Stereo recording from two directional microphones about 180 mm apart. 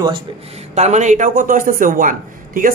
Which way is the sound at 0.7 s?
40° right (ahead or behind).